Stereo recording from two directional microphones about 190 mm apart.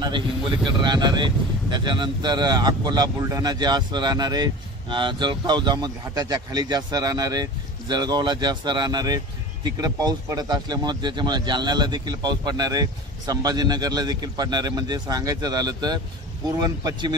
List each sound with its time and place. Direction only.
0.7 s speech: 25° right (ahead or behind)